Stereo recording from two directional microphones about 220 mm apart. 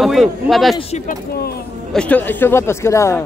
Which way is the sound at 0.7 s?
30° left (ahead or behind).